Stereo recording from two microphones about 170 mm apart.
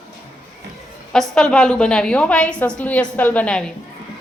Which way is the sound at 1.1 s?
5° left (ahead or behind).